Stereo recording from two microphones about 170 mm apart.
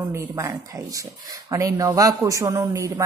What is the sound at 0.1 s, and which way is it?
A woman's voice, 15° right (ahead or behind).